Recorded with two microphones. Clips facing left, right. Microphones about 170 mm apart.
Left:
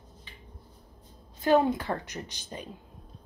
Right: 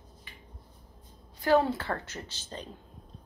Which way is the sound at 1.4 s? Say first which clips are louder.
Left 2 dB; 20° left (ahead or behind).